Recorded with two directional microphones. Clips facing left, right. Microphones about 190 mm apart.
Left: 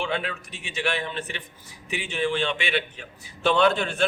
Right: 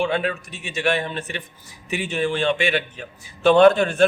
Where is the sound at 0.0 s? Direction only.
45° right (ahead or behind).